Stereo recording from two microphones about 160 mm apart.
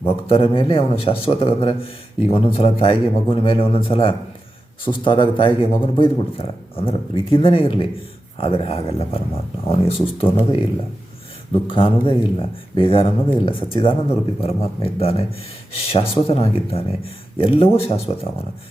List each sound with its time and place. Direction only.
0.0 s speech: 35° left (ahead or behind)
11.7 s speech: 35° left (ahead or behind)